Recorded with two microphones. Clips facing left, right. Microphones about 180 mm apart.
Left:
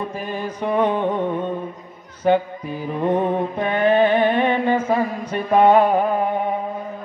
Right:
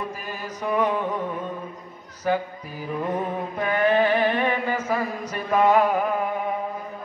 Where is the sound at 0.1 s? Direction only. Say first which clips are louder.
Left 7 dB; 30° left (ahead or behind).